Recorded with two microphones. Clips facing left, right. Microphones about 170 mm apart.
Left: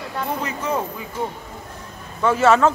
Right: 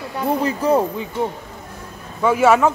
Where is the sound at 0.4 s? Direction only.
35° right (ahead or behind).